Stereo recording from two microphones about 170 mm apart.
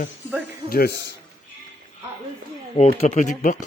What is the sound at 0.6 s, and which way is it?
Speech, 65° left (ahead or behind).